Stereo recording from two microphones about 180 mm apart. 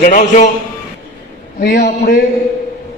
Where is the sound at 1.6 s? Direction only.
60° left (ahead or behind).